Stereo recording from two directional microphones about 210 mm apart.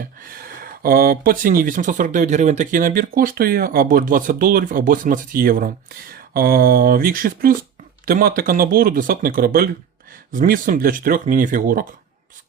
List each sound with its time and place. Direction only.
0.0 s speech: 40° right (ahead or behind)